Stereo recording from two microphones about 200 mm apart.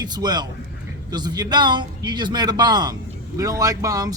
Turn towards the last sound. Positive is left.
turn(degrees=-15)  # may be behind; listen again after turning